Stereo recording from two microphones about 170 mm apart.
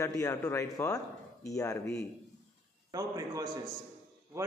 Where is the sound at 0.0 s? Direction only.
20° left (ahead or behind).